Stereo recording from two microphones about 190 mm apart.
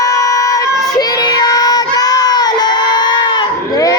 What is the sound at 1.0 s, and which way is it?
Child singing, 20° left (ahead or behind).